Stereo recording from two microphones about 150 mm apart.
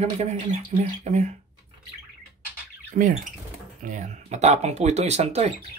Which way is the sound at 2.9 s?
65° right (ahead or behind).